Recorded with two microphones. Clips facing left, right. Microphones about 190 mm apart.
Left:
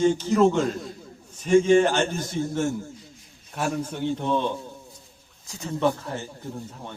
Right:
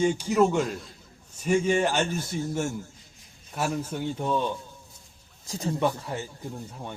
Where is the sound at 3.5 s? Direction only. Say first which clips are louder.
Left 2 dB; 5° right (ahead or behind).